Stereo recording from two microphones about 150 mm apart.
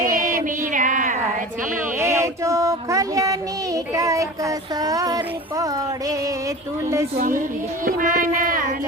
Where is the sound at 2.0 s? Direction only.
20° right (ahead or behind).